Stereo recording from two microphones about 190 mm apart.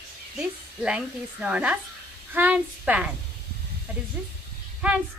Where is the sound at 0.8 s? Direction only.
5° right (ahead or behind).